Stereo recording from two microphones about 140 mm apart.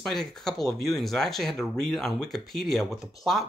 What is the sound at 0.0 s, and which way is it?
Speech, 5° left (ahead or behind).